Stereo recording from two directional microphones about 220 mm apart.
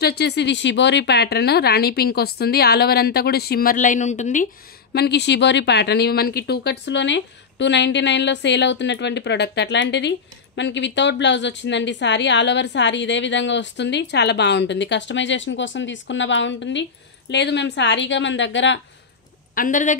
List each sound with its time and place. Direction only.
0.0 s speech: 50° left (ahead or behind)
4.9 s a woman's voice: 50° left (ahead or behind)
19.5 s a man's voice: 35° left (ahead or behind)